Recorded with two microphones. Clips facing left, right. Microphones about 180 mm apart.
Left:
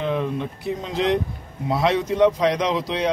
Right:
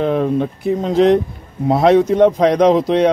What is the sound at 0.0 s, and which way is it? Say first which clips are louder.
Speech: right 8 dB; 50° right (ahead or behind).